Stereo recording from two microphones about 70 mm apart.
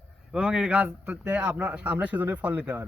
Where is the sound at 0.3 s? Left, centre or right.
Centre.